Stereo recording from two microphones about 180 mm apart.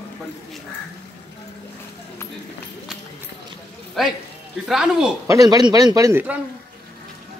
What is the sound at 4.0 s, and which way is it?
Speech, centre (ahead or behind).